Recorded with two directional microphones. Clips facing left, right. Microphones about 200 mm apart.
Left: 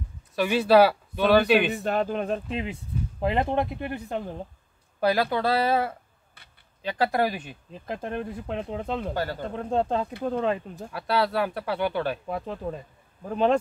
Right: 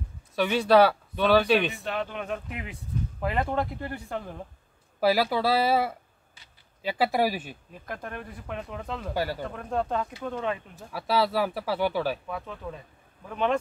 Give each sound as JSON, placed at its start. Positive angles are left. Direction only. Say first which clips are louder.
{"t": 0.4, "sound": "speech", "louder": "left 1 dB", "side_deg": 5}
{"t": 1.8, "sound": "speech", "louder": "left 6 dB", "side_deg": 40}
{"t": 5.0, "sound": "speech", "louder": "even", "side_deg": -5}
{"t": 7.7, "sound": "speech", "louder": "left 6 dB", "side_deg": 25}
{"t": 9.1, "sound": "speech", "louder": "even", "side_deg": -10}
{"t": 9.5, "sound": "speech", "louder": "left 4 dB", "side_deg": 25}
{"t": 10.9, "sound": "speech", "louder": "even", "side_deg": 0}
{"t": 12.3, "sound": "speech", "louder": "left 5 dB", "side_deg": 35}